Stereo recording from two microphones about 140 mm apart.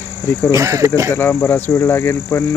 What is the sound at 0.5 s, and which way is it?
Speech, 20° right (ahead or behind).